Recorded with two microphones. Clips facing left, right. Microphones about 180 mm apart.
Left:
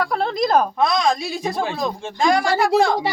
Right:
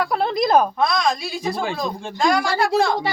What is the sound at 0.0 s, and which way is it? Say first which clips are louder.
Speech: even; 5° right (ahead or behind).